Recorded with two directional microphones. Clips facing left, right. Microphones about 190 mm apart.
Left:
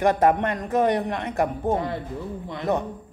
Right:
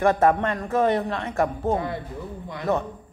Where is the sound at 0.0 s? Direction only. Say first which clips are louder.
Even; 15° left (ahead or behind).